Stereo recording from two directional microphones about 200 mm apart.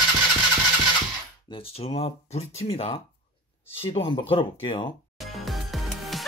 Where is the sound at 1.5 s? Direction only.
30° left (ahead or behind).